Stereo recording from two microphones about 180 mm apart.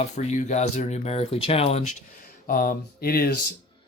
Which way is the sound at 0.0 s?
40° left (ahead or behind).